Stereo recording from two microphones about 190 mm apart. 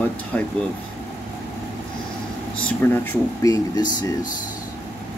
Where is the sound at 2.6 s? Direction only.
10° left (ahead or behind).